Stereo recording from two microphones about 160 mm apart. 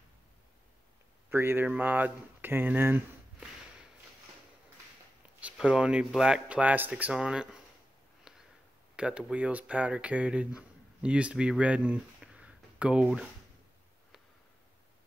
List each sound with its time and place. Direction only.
1.3 s speech: 15° right (ahead or behind)
5.4 s speech: 5° right (ahead or behind)
8.2 s a sound: 5° right (ahead or behind)
8.9 s speech: 5° right (ahead or behind)